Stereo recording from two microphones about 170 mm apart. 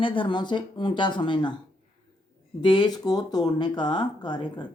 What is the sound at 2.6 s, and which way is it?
Speech, 25° left (ahead or behind).